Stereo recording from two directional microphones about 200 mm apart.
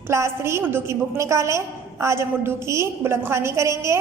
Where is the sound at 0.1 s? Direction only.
15° right (ahead or behind).